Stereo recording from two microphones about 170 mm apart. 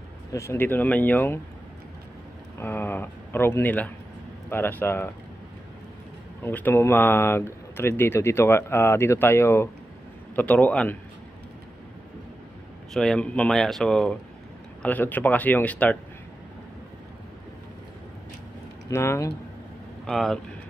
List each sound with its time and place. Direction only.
0.3 s speech: 15° left (ahead or behind)
2.6 s speech: 10° left (ahead or behind)
6.4 s speech: 10° left (ahead or behind)
12.9 s speech: 5° left (ahead or behind)
18.9 s speech: 15° left (ahead or behind)
20.1 s speech: centre (ahead or behind)